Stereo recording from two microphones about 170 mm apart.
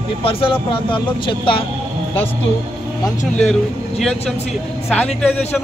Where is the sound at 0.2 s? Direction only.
35° left (ahead or behind).